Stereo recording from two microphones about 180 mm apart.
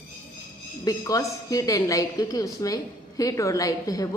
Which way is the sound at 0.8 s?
20° left (ahead or behind).